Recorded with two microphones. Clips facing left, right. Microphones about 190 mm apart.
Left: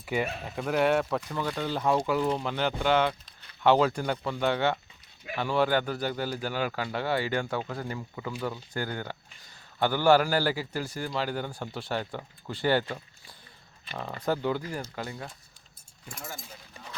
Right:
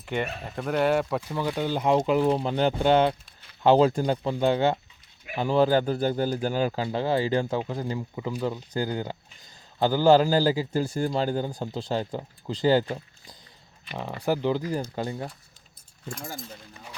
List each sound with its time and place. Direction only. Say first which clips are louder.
0.0 s speech: even; 5° left (ahead or behind); by 5.7 s 30° right (ahead or behind)
6.3 s speech: right 6 dB; 40° right (ahead or behind)
6.6 s speech: right 5 dB; 30° right (ahead or behind)
11.0 s speech: right 4 dB; 40° right (ahead or behind)
11.3 s speech: right 5 dB; 20° right (ahead or behind)
13.9 s speech: right 3 dB; 15° right (ahead or behind)